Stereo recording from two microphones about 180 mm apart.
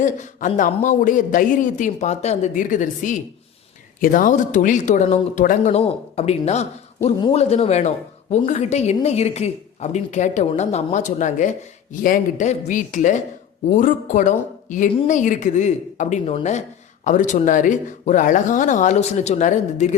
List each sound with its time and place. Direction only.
0.0 s speech: 45° left (ahead or behind)